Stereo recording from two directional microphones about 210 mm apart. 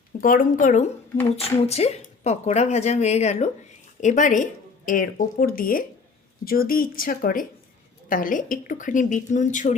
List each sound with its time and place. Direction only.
0.2 s speech: 40° left (ahead or behind)